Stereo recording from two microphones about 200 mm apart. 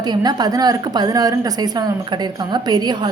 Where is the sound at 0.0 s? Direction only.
20° right (ahead or behind).